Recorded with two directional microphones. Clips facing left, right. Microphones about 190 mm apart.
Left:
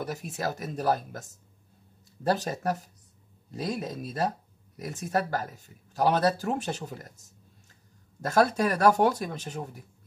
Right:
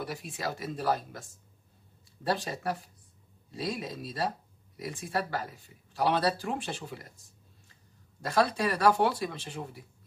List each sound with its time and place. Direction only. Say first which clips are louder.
0.0 s speech: left 3 dB; 45° left (ahead or behind)
2.2 s speech: left 4 dB; 40° left (ahead or behind)
8.5 s speech: left 3 dB; 45° left (ahead or behind)